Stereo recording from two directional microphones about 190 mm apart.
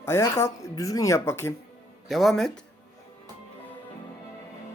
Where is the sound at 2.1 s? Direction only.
Centre (ahead or behind).